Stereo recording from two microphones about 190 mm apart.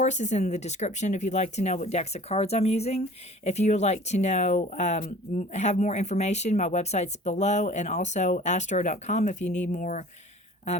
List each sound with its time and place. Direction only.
0.0 s speech: 40° left (ahead or behind)